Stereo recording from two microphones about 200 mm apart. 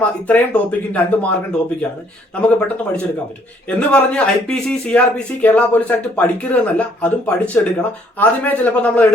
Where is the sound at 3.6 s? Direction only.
5° left (ahead or behind).